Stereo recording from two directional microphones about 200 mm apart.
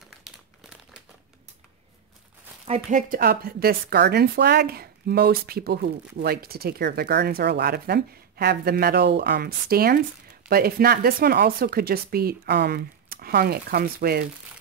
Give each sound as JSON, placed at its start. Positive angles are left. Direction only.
{"t": 0.3, "sound": "crumpling", "side_deg": 0}
{"t": 2.6, "sound": "speech", "side_deg": -35}